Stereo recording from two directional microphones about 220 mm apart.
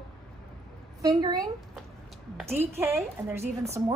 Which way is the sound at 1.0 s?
15° right (ahead or behind).